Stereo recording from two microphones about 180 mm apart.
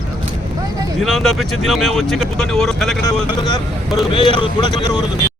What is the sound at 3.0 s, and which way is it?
Speech, 20° left (ahead or behind).